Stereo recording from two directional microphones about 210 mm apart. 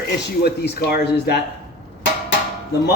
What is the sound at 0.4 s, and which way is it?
Speech, 50° left (ahead or behind).